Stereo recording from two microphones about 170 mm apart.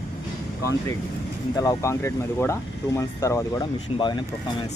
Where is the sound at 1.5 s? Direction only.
20° left (ahead or behind).